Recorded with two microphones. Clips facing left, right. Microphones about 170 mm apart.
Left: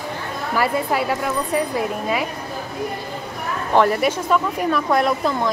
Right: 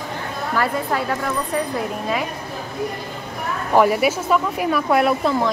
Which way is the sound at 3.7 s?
10° right (ahead or behind).